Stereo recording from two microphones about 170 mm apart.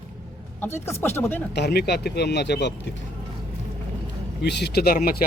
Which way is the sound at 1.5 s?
75° left (ahead or behind).